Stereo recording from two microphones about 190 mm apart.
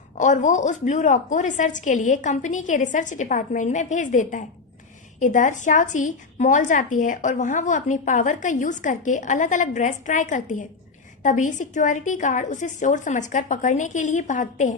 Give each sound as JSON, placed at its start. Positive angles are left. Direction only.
{"t": 0.2, "sound": "a woman's voice", "side_deg": 40}